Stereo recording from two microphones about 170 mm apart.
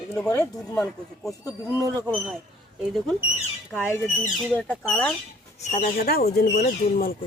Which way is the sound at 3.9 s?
15° left (ahead or behind).